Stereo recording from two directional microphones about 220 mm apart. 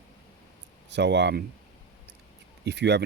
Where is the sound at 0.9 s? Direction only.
50° right (ahead or behind).